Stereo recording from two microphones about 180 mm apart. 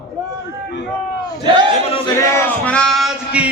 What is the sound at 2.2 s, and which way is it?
Music, 10° left (ahead or behind).